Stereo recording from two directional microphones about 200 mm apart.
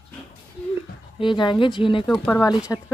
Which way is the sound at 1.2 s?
25° left (ahead or behind).